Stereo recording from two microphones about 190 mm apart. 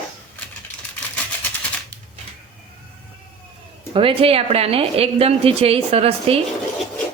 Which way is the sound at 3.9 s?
30° right (ahead or behind).